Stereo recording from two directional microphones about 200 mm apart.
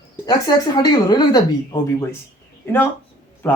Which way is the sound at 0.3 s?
20° left (ahead or behind).